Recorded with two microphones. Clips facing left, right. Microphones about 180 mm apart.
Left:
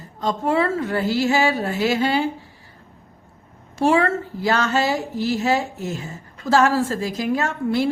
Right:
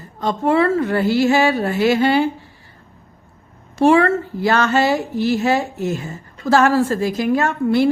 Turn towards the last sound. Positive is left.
turn(degrees=-60)  # may be behind; listen again after turning